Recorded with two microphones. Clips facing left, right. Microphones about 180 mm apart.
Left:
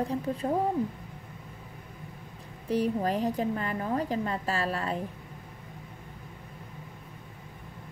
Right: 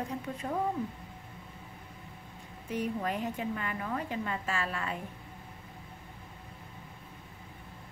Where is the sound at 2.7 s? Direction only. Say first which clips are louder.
Left 6 dB; 35° left (ahead or behind).